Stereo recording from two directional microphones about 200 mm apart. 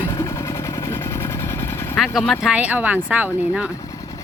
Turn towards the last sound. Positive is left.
turn(degrees=-5)  # may be behind; listen again after turning